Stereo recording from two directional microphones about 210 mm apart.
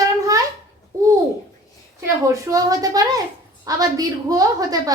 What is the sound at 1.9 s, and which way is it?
A woman's voice, 15° right (ahead or behind).